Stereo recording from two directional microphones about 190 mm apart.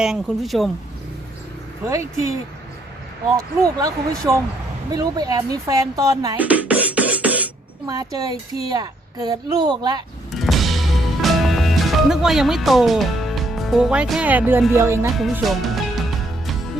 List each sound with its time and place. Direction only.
0.0 s speech: centre (ahead or behind)
1.9 s speech: 15° right (ahead or behind)
3.8 s speech: 20° right (ahead or behind)
6.0 s beatboxing: 15° right (ahead or behind)
7.9 s speech: 20° right (ahead or behind)
10.3 s music: centre (ahead or behind)
15.2 s speech: centre (ahead or behind)